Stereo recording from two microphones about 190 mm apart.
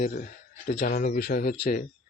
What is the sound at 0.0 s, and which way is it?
Speech, 45° left (ahead or behind).